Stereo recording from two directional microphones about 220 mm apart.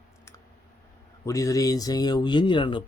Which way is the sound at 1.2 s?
15° left (ahead or behind).